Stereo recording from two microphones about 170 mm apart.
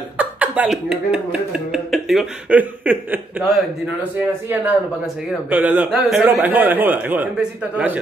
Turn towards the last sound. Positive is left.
turn(degrees=-10)  # may be behind; listen again after turning